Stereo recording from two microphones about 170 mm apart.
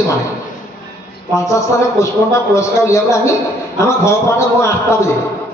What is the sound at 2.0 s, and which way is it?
A man's voice, 20° left (ahead or behind).